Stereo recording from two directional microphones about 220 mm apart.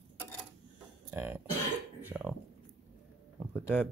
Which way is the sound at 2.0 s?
5° right (ahead or behind).